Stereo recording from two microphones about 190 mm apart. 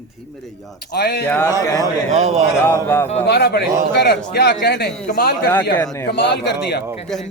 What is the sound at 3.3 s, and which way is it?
A man's voice, 60° left (ahead or behind).